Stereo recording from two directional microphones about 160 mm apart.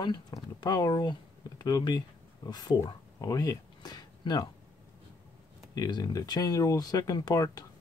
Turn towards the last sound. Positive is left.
turn(degrees=20)  # may be behind; listen again after turning